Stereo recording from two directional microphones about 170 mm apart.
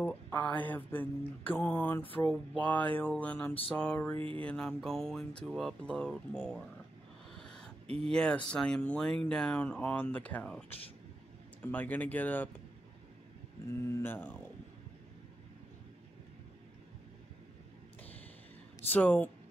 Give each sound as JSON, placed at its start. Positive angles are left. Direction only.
{"t": 0.0, "sound": "mantra", "side_deg": 10}
{"t": 4.4, "sound": "speech", "side_deg": 5}
{"t": 7.3, "sound": "a sound", "side_deg": 5}
{"t": 7.8, "sound": "speech", "side_deg": -35}
{"t": 8.1, "sound": "speech", "side_deg": 5}
{"t": 11.6, "sound": "mantra", "side_deg": 10}
{"t": 13.8, "sound": "mantra", "side_deg": 10}
{"t": 18.9, "sound": "mantra", "side_deg": 10}